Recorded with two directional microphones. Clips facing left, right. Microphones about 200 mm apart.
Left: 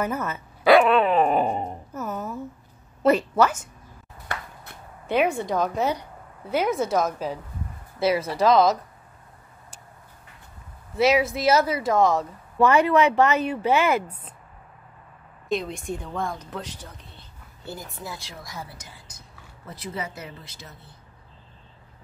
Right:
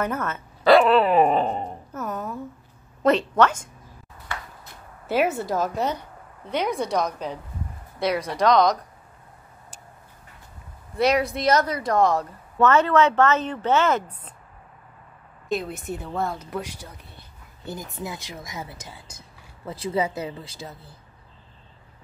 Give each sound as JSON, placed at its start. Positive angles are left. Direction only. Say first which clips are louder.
{"t": 0.0, "sound": "speech", "louder": "even", "side_deg": 10}
{"t": 1.3, "sound": "a sound", "louder": "even", "side_deg": 10}
{"t": 3.0, "sound": "speech", "louder": "even", "side_deg": 10}
{"t": 5.0, "sound": "speech", "louder": "even", "side_deg": -5}
{"t": 11.0, "sound": "speech", "louder": "left 1 dB", "side_deg": 0}
{"t": 12.5, "sound": "speech", "louder": "even", "side_deg": 10}
{"t": 15.4, "sound": "speech", "louder": "even", "side_deg": -5}